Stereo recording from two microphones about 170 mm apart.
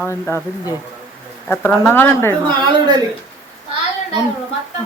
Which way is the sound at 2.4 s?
25° right (ahead or behind).